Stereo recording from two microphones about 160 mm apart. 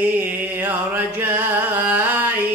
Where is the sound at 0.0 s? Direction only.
10° right (ahead or behind).